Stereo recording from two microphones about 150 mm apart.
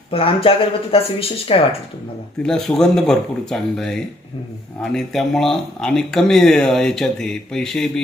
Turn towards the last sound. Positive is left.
turn(degrees=5)  # may be behind; listen again after turning